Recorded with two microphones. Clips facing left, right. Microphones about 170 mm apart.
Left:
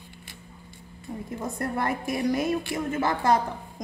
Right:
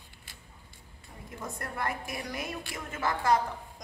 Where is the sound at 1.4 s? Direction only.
30° left (ahead or behind).